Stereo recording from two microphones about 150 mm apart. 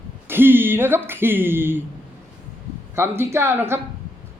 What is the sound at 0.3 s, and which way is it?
Speech, 15° right (ahead or behind).